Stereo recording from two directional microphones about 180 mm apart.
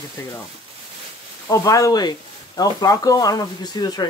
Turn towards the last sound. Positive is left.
turn(degrees=20)  # may be behind; listen again after turning